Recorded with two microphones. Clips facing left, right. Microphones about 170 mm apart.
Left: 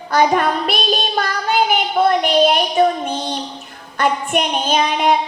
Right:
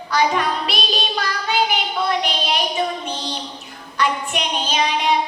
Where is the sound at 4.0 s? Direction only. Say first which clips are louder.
Left 4 dB; 50° left (ahead or behind).